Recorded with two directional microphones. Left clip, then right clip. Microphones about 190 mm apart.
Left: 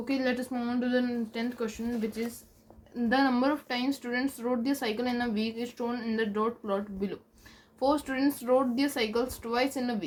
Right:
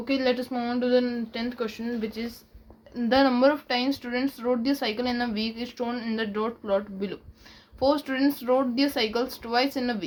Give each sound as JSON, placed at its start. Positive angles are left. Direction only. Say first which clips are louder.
{"t": 0.0, "sound": "speech", "louder": "right 5 dB", "side_deg": -35}